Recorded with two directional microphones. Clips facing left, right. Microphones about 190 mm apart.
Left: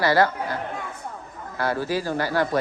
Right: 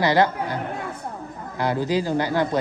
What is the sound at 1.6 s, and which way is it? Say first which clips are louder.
Speech: right 2 dB; 20° right (ahead or behind).